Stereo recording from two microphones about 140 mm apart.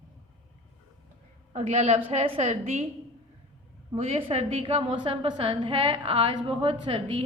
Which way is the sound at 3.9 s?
40° right (ahead or behind).